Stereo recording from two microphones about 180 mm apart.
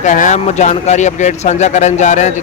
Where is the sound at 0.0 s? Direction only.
40° left (ahead or behind).